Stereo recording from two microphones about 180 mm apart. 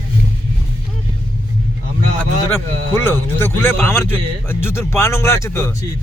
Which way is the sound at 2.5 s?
10° left (ahead or behind).